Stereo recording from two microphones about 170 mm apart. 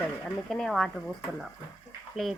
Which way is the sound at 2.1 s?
Centre (ahead or behind).